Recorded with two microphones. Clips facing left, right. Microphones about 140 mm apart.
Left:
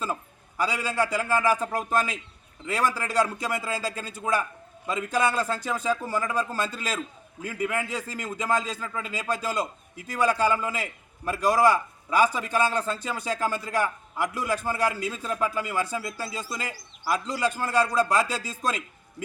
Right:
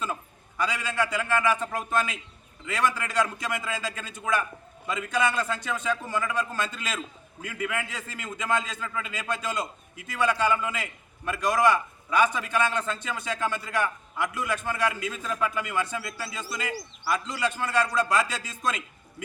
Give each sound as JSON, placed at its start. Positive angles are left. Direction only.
{"t": 0.0, "sound": "a man's voice", "side_deg": 35}